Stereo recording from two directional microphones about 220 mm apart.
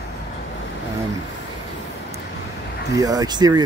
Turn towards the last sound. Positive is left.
turn(degrees=-20)  # may be behind; listen again after turning